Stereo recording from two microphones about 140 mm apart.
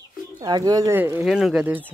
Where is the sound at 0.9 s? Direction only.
15° right (ahead or behind).